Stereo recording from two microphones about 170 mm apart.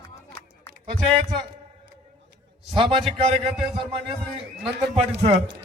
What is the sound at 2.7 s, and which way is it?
Speech, 30° right (ahead or behind).